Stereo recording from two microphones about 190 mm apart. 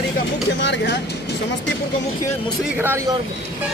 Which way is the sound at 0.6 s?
65° left (ahead or behind).